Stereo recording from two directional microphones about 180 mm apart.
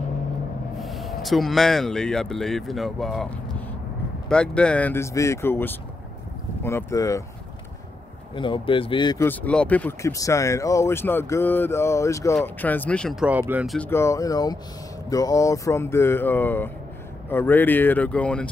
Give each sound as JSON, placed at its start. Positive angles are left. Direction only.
{"t": 0.7, "sound": "speech", "side_deg": 0}
{"t": 8.4, "sound": "speech", "side_deg": 30}
{"t": 9.2, "sound": "speech", "side_deg": 10}
{"t": 13.7, "sound": "speech", "side_deg": 15}